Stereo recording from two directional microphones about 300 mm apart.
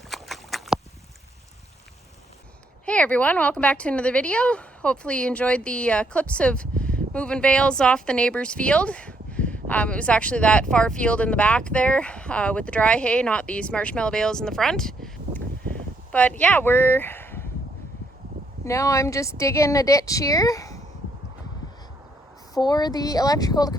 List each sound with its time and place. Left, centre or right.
0.1 s a sound: centre
2.8 s speech: centre
16.1 s speech: centre
18.6 s speech: centre
22.6 s speech: centre